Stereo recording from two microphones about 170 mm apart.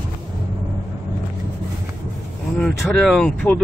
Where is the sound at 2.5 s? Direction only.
Centre (ahead or behind).